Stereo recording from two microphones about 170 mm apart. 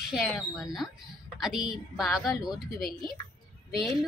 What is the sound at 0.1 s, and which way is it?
Speech, centre (ahead or behind).